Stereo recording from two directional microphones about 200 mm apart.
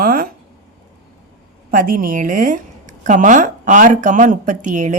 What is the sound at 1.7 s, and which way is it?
A woman's voice, 45° right (ahead or behind).